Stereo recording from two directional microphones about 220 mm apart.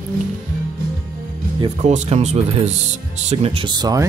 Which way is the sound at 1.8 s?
30° right (ahead or behind).